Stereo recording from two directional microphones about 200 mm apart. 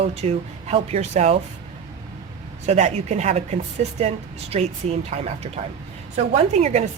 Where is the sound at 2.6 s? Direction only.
35° right (ahead or behind).